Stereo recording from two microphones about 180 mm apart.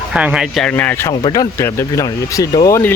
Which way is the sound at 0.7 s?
10° left (ahead or behind).